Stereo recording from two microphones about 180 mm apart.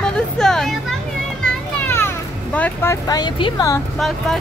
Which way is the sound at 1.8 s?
10° left (ahead or behind).